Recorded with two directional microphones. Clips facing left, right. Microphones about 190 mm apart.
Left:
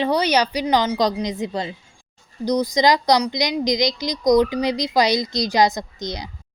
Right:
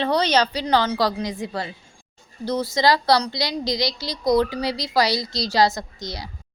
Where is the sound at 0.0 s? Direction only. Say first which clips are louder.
Left 1 dB; 10° left (ahead or behind).